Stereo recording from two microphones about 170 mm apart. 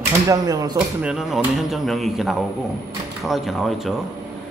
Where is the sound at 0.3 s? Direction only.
20° right (ahead or behind).